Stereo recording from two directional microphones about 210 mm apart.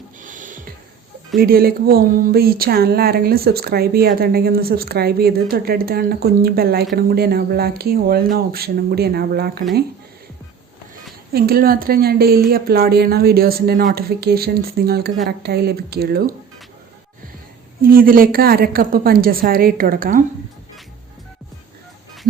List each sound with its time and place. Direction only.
0.2 s music: 40° right (ahead or behind)
1.4 s speech: 45° right (ahead or behind)
11.3 s speech: 45° right (ahead or behind)
17.8 s speech: 45° right (ahead or behind)